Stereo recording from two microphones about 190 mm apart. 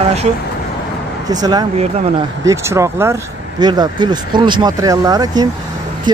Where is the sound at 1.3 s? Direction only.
20° right (ahead or behind).